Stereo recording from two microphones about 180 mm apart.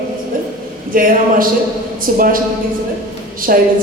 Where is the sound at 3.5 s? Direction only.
50° right (ahead or behind).